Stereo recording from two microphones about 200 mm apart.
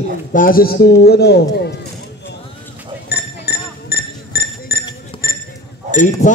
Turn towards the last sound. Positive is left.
turn(degrees=40)  # may be behind; listen again after turning